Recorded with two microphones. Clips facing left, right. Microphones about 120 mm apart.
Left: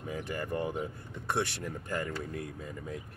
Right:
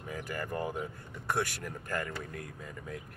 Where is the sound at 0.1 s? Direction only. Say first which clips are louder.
Left 1 dB; 25° left (ahead or behind).